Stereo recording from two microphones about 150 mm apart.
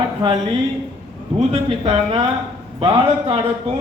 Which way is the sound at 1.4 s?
45° right (ahead or behind).